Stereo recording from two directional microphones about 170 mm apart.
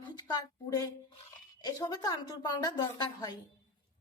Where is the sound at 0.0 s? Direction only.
25° left (ahead or behind).